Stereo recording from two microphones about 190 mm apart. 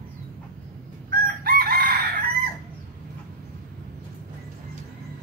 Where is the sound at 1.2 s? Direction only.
50° right (ahead or behind).